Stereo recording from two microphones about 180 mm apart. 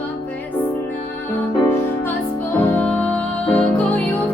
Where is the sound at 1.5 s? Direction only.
15° left (ahead or behind).